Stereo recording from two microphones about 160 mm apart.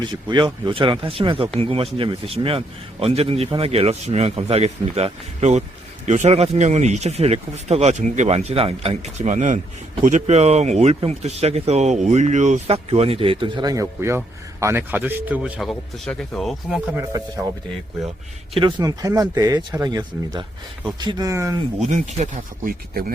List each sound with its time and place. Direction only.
0.0 s speech: 25° right (ahead or behind); by 16.8 s centre (ahead or behind)
16.9 s speech: 20° right (ahead or behind)
18.5 s speech: 25° right (ahead or behind)
21.8 s speech: 45° right (ahead or behind)